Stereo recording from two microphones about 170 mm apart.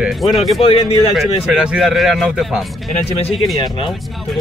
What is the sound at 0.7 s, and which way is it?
Speech, 35° left (ahead or behind).